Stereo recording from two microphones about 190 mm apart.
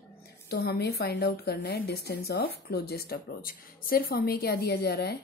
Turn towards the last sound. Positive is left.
turn(degrees=55)  # may be behind; listen again after turning